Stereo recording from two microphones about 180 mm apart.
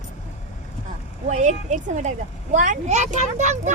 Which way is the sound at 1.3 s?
40° right (ahead or behind).